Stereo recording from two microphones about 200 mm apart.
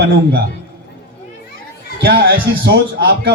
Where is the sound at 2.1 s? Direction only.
60° right (ahead or behind).